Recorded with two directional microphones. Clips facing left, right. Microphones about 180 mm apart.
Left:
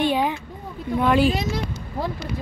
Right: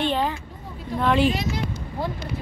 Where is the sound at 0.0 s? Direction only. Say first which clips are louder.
Left 2 dB; 10° left (ahead or behind).